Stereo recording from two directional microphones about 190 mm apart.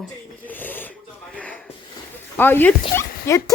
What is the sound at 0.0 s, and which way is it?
Wheeze, 10° left (ahead or behind).